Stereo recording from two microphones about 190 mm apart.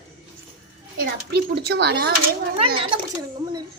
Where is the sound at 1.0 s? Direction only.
55° right (ahead or behind).